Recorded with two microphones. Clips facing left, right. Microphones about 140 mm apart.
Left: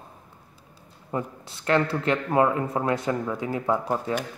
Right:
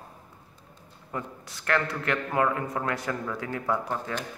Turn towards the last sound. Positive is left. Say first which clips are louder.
# left 4 dB
turn(degrees=20)  # may be behind; listen again after turning